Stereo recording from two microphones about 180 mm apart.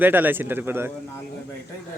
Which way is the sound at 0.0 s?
10° right (ahead or behind).